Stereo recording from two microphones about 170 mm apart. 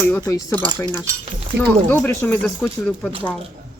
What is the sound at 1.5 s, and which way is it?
Speech, 75° right (ahead or behind).